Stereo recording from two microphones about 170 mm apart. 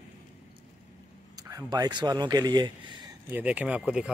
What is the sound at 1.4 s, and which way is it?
Speech, 20° right (ahead or behind).